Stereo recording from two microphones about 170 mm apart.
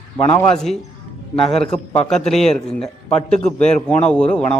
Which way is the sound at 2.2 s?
Centre (ahead or behind).